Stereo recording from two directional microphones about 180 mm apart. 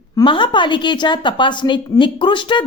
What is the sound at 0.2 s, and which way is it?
A woman's voice, 25° left (ahead or behind).